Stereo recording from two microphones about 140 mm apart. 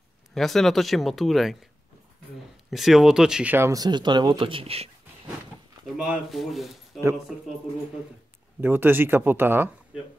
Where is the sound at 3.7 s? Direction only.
30° right (ahead or behind); by 4.9 s 45° right (ahead or behind).